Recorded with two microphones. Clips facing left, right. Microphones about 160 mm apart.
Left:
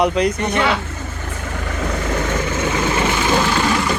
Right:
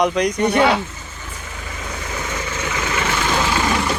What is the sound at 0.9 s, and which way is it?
Vehicle, 60° left (ahead or behind).